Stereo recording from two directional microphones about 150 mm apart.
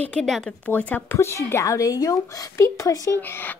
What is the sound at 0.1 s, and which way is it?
Speech, 5° left (ahead or behind).